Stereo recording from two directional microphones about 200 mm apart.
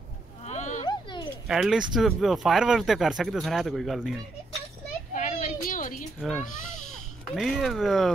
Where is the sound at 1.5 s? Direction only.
5° right (ahead or behind).